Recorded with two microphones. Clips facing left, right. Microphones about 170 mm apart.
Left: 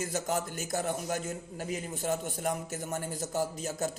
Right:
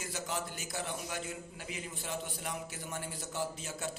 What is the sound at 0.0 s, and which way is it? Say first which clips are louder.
A man's voice: left 7 dB; 45° left (ahead or behind).